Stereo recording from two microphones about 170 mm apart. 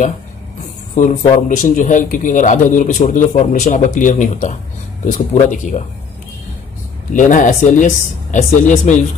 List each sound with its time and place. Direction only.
0.9 s a man's voice: 45° left (ahead or behind)
7.2 s a man's voice: 50° left (ahead or behind)